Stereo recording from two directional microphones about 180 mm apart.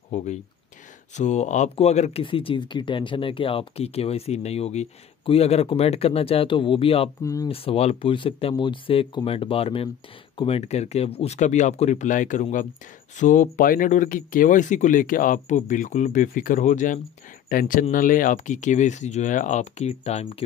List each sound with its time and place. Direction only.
0.1 s speech: 40° left (ahead or behind)